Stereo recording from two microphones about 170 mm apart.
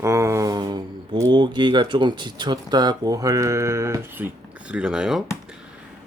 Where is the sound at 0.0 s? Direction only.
15° right (ahead or behind).